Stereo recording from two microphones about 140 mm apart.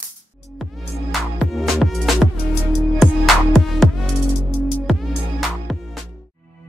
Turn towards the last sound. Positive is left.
turn(degrees=0)  # may be behind; listen again after turning